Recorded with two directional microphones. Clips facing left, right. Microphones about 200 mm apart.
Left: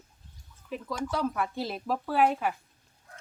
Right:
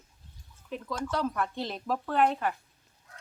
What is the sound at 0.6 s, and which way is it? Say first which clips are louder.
Speech: left 1 dB; centre (ahead or behind).